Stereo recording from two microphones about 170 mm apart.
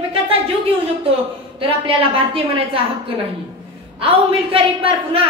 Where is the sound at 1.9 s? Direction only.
35° right (ahead or behind).